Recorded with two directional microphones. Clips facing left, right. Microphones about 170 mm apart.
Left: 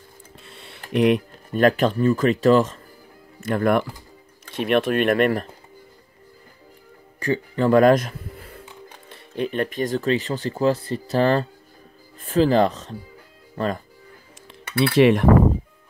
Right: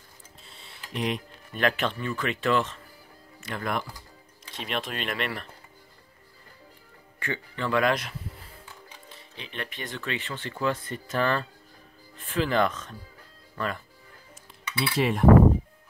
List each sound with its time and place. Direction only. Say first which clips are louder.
0.4 s a sound: left 6 dB; 65° left (ahead or behind)
1.5 s speech: left 9 dB; 40° left (ahead or behind)
7.2 s a man's voice: left 11 dB; 40° left (ahead or behind)
14.6 s cutlery: left 10 dB; 55° left (ahead or behind); by 15.2 s 80° left